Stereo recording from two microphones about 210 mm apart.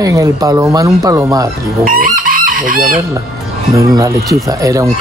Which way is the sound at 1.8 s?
40° right (ahead or behind).